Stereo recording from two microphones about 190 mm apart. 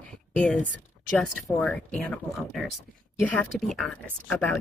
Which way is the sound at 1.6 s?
5° left (ahead or behind).